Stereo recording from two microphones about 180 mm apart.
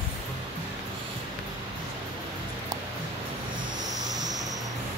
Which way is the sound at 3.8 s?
20° right (ahead or behind).